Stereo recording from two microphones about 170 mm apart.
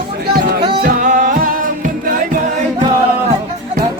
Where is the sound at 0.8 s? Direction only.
55° right (ahead or behind).